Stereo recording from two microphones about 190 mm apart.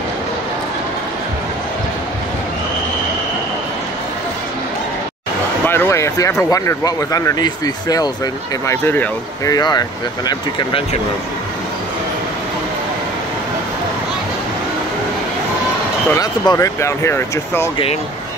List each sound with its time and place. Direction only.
5.7 s speech: 15° left (ahead or behind)
16.1 s speech: 15° left (ahead or behind)